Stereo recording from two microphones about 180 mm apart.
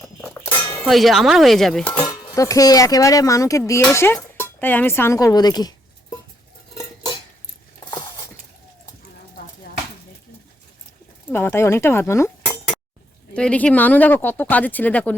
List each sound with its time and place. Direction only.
0.0 s music: 5° left (ahead or behind)
0.6 s a sound: 20° left (ahead or behind)
0.9 s speech: centre (ahead or behind)
2.0 s speech: 20° left (ahead or behind)
7.9 s a sound: 25° left (ahead or behind)
11.3 s speech: 10° left (ahead or behind)
13.3 s speech: 5° left (ahead or behind)